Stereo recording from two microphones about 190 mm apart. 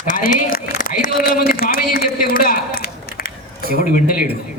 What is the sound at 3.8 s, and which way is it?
Speech, 45° left (ahead or behind).